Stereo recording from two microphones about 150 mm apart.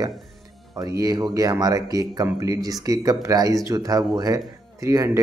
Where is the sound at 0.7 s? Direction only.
25° right (ahead or behind).